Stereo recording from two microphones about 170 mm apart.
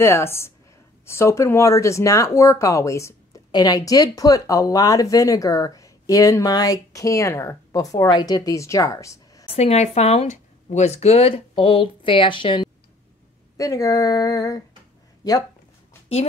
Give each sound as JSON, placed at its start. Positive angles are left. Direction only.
{"t": 0.0, "sound": "speech", "side_deg": 15}
{"t": 9.5, "sound": "speech", "side_deg": 40}